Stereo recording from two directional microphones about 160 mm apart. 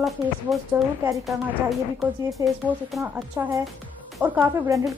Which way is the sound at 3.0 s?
20° right (ahead or behind).